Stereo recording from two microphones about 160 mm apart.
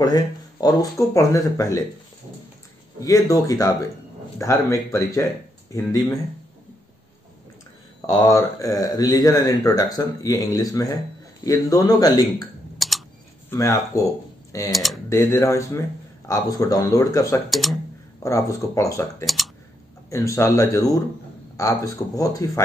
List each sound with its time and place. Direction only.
0.0 s speech: 25° left (ahead or behind)
3.0 s speech: 20° left (ahead or behind)
8.1 s speech: 20° left (ahead or behind)
12.7 s typing: centre (ahead or behind)
13.5 s a sound: 20° left (ahead or behind)
14.7 s speech: centre (ahead or behind)
15.0 s speech: 20° left (ahead or behind)
17.5 s speech: centre (ahead or behind)
18.2 s speech: 20° left (ahead or behind)
19.2 s speech: centre (ahead or behind)
20.1 s speech: 20° left (ahead or behind)